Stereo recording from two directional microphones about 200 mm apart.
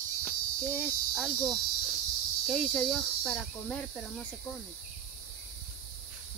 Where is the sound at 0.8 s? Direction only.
Centre (ahead or behind).